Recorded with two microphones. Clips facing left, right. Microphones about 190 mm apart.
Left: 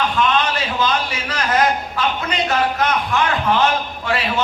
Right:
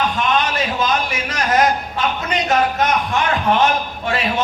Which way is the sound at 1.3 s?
25° right (ahead or behind).